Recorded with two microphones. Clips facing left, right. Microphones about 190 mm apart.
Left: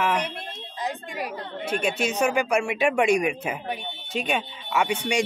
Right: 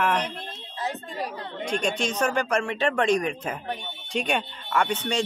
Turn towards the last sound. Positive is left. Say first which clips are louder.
# left 1 dB
turn(degrees=10)  # may be behind; listen again after turning